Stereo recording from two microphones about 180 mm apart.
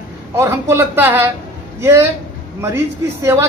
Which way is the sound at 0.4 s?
15° right (ahead or behind).